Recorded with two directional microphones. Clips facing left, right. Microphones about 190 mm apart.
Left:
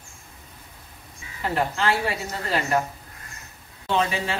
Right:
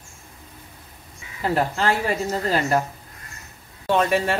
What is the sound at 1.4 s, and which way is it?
A woman's voice, 40° right (ahead or behind).